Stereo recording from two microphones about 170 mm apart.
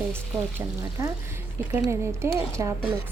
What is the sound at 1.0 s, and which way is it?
Speech, 15° right (ahead or behind).